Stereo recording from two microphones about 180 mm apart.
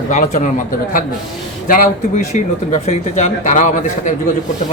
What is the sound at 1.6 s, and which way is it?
A man's voice, 50° left (ahead or behind).